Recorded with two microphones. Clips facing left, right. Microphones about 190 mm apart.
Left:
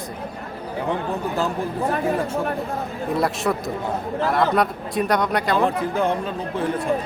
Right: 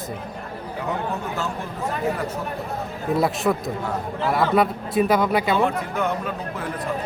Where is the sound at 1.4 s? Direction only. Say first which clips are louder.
Left 5 dB; 30° left (ahead or behind).